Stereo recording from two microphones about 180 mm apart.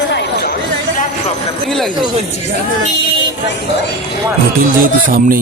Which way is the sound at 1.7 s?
Centre (ahead or behind).